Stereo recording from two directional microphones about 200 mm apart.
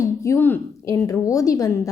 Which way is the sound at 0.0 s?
15° left (ahead or behind).